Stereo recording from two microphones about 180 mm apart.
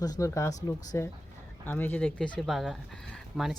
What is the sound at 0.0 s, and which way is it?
Speech, 15° left (ahead or behind).